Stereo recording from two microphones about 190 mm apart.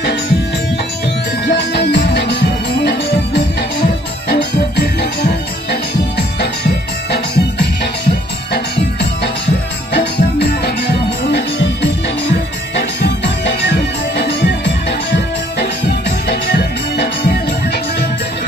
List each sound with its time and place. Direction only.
1.4 s music: 65° left (ahead or behind)
9.9 s music: 60° left (ahead or behind)